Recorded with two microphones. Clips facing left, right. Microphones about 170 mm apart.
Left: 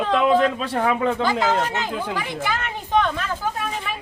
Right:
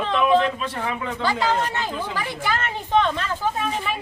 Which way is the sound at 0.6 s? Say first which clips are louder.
Left 6 dB; 60° left (ahead or behind).